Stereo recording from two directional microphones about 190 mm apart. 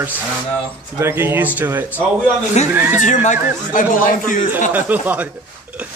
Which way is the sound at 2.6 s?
35° left (ahead or behind).